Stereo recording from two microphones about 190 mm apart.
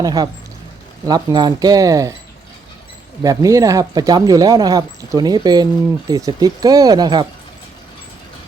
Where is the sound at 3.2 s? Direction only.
20° right (ahead or behind).